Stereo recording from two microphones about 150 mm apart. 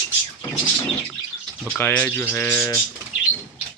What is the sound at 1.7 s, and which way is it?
Speech, 10° left (ahead or behind).